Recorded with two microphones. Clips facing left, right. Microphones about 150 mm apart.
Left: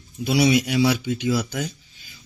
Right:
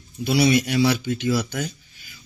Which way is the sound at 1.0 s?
15° left (ahead or behind).